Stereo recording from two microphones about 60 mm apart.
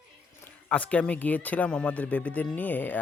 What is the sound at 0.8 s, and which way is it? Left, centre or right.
Speech, left.